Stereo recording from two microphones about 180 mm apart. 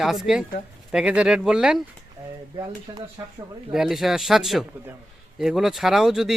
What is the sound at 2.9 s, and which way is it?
Speech, 20° right (ahead or behind).